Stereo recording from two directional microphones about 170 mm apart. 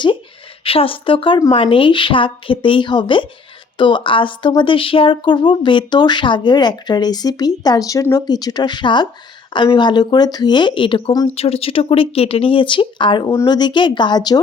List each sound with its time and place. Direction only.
0.6 s speech: 35° left (ahead or behind)